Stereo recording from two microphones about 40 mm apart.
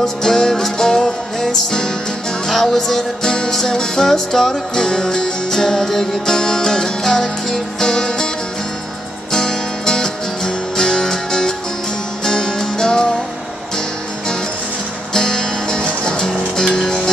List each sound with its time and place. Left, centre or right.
0.0 s music: centre
9.3 s music: centre
15.1 s music: centre